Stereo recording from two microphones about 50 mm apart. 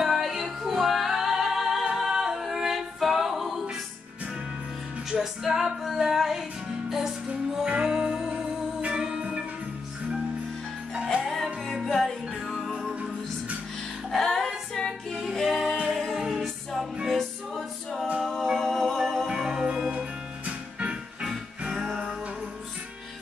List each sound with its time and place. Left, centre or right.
0.0 s music: centre
5.2 s female singing: centre
7.6 s music: centre
11.0 s music: centre
11.2 s music: centre
14.1 s music: centre
15.3 s a capella: centre
16.1 s music: centre
19.5 s music: centre
21.3 s music: centre